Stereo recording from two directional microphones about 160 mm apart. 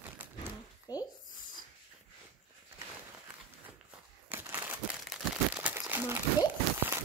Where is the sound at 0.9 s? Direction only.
25° left (ahead or behind).